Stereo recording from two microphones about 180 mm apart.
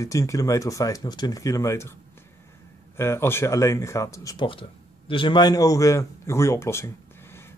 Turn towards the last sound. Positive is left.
turn(degrees=15)  # may be behind; listen again after turning